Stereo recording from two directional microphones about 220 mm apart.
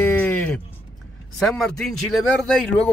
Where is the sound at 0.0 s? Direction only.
5° left (ahead or behind).